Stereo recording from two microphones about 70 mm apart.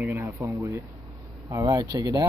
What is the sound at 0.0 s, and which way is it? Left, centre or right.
Speech, right.